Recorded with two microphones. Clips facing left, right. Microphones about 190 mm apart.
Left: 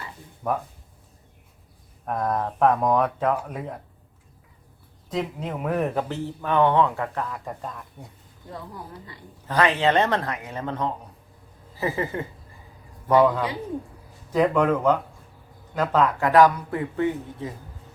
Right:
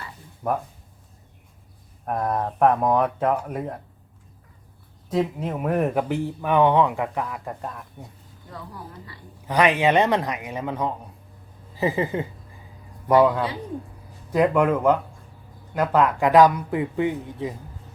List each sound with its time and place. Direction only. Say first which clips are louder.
2.0 s speech: right 1 dB; 10° right (ahead or behind)
5.0 s speech: right 4 dB; 10° right (ahead or behind)
9.5 s speech: right 2 dB; 15° right (ahead or behind)